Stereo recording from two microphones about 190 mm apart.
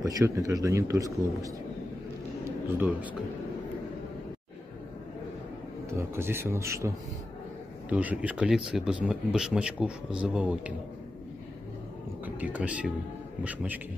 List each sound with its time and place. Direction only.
0.0 s speech: 15° right (ahead or behind)
2.4 s a sound: 10° right (ahead or behind)
5.9 s speech: 15° right (ahead or behind)
7.9 s speech: 10° right (ahead or behind)
12.4 s speech: 5° right (ahead or behind)